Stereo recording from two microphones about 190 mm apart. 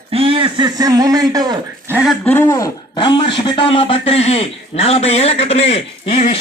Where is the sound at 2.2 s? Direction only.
10° left (ahead or behind).